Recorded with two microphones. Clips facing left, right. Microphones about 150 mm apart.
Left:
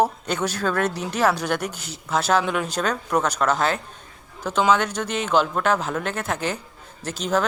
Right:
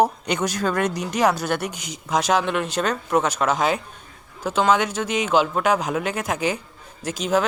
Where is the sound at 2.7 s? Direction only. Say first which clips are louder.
Right 3 dB; 10° right (ahead or behind).